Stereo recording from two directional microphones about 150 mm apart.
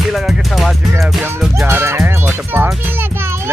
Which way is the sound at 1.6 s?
15° right (ahead or behind).